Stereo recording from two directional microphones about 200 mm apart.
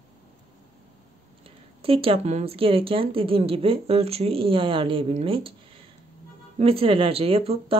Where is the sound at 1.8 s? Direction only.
30° right (ahead or behind).